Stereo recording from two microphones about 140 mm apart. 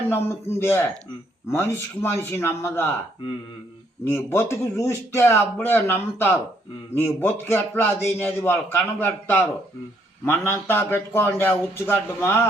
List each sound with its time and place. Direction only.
0.1 s a man's voice: 15° left (ahead or behind)
4.0 s a man's voice: 20° left (ahead or behind)